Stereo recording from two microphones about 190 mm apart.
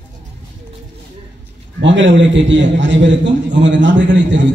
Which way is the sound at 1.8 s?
75° right (ahead or behind).